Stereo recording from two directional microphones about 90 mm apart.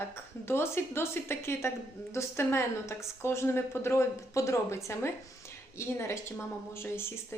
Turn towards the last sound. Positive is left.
turn(degrees=30)  # may be behind; listen again after turning